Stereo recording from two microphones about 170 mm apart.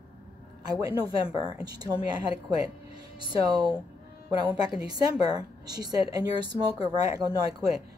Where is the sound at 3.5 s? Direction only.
25° right (ahead or behind).